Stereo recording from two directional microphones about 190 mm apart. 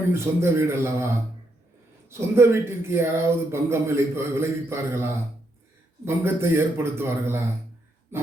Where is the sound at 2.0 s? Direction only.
15° right (ahead or behind).